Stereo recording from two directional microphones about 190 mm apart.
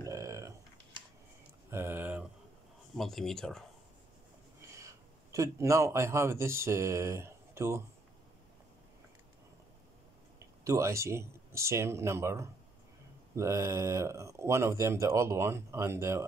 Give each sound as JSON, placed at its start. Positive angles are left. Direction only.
{"t": 0.0, "sound": "a sound", "side_deg": -15}
{"t": 3.0, "sound": "speech", "side_deg": 0}
{"t": 4.6, "sound": "a man's voice", "side_deg": -15}
{"t": 10.6, "sound": "speech", "side_deg": -15}